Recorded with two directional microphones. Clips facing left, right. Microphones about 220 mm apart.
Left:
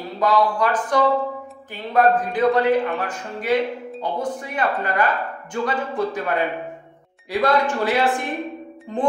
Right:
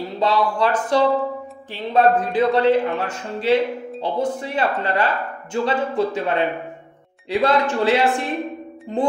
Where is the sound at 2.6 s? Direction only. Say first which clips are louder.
Right 2 dB; 25° right (ahead or behind).